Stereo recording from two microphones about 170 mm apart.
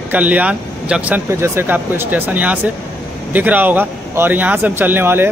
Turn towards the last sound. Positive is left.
turn(degrees=-10)  # may be behind; listen again after turning